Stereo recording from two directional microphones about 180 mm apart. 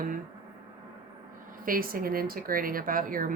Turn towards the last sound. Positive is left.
turn(degrees=-50)  # may be behind; listen again after turning